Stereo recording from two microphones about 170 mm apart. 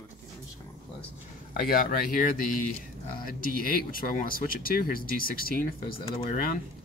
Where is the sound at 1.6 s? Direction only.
55° left (ahead or behind).